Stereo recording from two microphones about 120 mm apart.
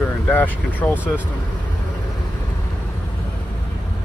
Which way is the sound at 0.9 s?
10° right (ahead or behind).